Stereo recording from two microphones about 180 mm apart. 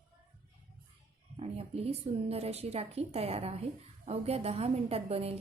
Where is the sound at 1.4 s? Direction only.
35° right (ahead or behind).